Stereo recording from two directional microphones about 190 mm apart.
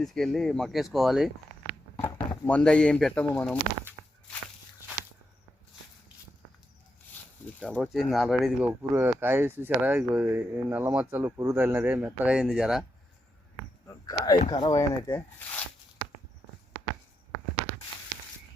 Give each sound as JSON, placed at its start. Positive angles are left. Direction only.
{"t": 0.0, "sound": "speech", "side_deg": 0}
{"t": 2.0, "sound": "a sound", "side_deg": 15}
{"t": 7.6, "sound": "speech", "side_deg": 5}
{"t": 8.8, "sound": "speech", "side_deg": -10}
{"t": 13.8, "sound": "a sound", "side_deg": 20}
{"t": 14.3, "sound": "speech", "side_deg": 25}